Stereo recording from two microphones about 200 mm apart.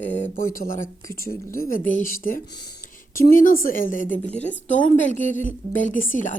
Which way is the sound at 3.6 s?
45° left (ahead or behind).